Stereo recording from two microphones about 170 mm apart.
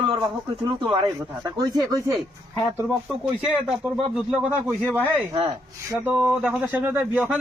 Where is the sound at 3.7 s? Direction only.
5° right (ahead or behind).